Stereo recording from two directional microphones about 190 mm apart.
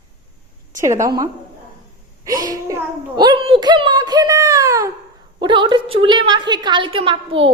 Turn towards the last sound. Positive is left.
turn(degrees=-30)  # may be behind; listen again after turning